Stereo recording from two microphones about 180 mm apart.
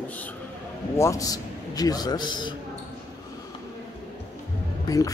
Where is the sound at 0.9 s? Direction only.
15° left (ahead or behind).